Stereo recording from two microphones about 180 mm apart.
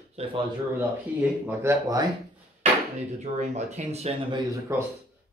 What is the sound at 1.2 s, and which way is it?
Speech, 15° right (ahead or behind).